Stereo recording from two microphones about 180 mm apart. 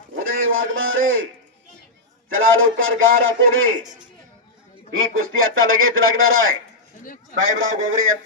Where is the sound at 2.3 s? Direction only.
90° right.